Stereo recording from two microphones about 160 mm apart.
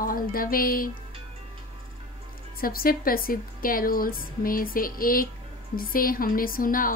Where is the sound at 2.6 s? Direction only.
65° left (ahead or behind).